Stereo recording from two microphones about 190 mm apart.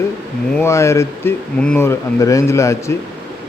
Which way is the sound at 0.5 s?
15° left (ahead or behind).